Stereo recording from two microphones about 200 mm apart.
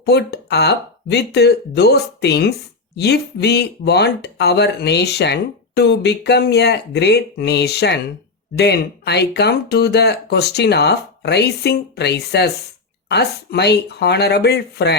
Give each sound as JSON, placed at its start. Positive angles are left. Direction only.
{"t": 0.0, "sound": "speech", "side_deg": 55}